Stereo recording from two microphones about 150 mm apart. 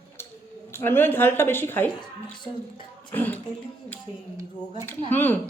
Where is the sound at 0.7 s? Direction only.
15° left (ahead or behind).